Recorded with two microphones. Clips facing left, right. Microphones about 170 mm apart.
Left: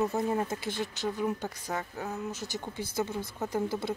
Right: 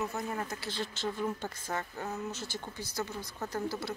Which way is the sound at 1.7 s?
Centre (ahead or behind).